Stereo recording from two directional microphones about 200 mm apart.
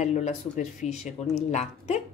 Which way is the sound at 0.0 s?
35° left (ahead or behind).